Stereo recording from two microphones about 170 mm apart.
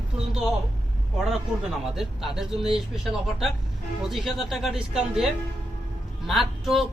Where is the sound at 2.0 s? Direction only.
Centre (ahead or behind).